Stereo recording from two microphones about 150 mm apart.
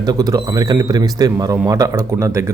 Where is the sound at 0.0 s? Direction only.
25° right (ahead or behind).